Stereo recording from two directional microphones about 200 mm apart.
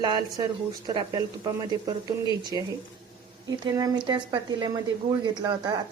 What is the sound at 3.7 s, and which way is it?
Speech, 20° right (ahead or behind).